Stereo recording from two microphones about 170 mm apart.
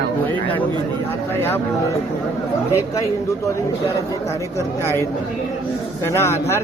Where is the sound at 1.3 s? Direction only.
15° left (ahead or behind).